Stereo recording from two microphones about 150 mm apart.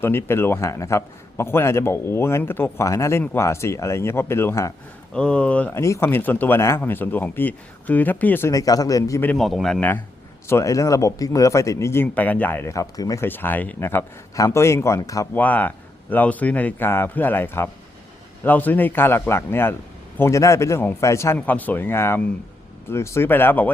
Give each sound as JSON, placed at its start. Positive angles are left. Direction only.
{"t": 0.0, "sound": "a man's voice", "side_deg": 15}
{"t": 5.1, "sound": "a man's voice", "side_deg": 5}
{"t": 9.4, "sound": "speech", "side_deg": 0}
{"t": 10.4, "sound": "speech", "side_deg": 20}
{"t": 15.4, "sound": "a man's voice", "side_deg": 10}